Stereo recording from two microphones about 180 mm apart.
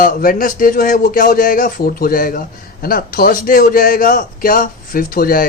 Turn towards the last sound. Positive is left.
turn(degrees=50)  # may be behind; listen again after turning